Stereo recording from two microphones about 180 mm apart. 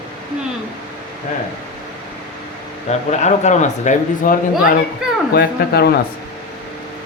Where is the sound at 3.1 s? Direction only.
40° left (ahead or behind).